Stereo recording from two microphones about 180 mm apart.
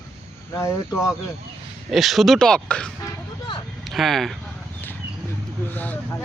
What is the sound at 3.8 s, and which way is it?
Speech, centre (ahead or behind).